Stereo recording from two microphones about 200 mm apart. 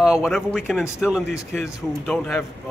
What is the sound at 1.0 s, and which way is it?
Speech, 5° right (ahead or behind).